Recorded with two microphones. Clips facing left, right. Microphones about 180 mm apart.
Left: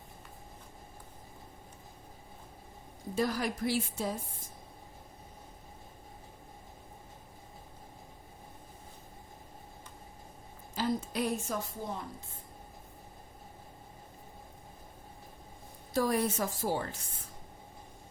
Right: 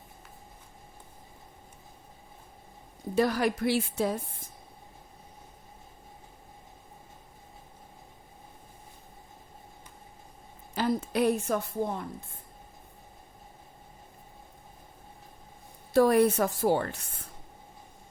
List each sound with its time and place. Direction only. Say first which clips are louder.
3.2 s a woman's voice: right 6 dB; 70° right (ahead or behind)
10.8 s a woman's voice: right 5 dB; 65° right (ahead or behind)
15.9 s a woman's voice: right 8 dB; 65° right (ahead or behind)